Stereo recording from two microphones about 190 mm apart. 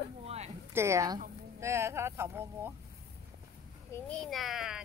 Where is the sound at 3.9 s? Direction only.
5° left (ahead or behind).